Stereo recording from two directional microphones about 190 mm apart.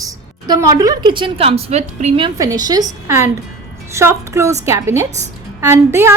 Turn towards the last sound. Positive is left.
turn(degrees=-15)  # may be behind; listen again after turning